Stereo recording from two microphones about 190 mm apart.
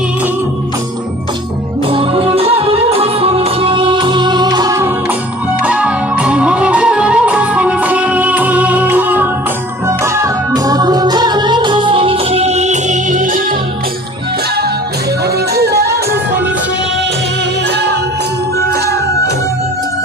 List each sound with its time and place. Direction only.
1.9 s music: 25° right (ahead or behind)
5.6 s music: 5° right (ahead or behind); by 13.4 s 40° right (ahead or behind)
15.5 s music: 60° right (ahead or behind)